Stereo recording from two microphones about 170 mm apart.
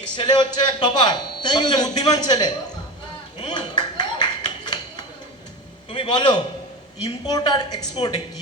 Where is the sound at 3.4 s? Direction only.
25° left (ahead or behind).